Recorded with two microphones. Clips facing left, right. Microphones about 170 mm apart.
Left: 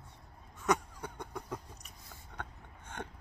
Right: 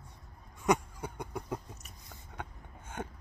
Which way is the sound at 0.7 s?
10° right (ahead or behind).